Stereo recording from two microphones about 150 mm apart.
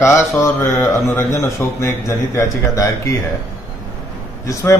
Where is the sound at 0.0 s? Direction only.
20° left (ahead or behind).